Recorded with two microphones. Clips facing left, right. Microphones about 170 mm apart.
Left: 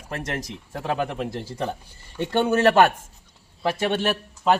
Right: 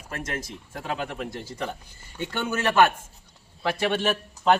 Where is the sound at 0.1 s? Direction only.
35° left (ahead or behind).